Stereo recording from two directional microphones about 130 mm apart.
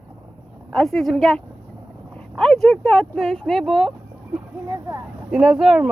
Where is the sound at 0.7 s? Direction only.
5° left (ahead or behind).